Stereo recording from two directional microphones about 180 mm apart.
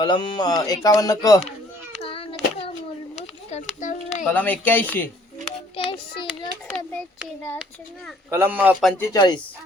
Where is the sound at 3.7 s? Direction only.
45° left (ahead or behind).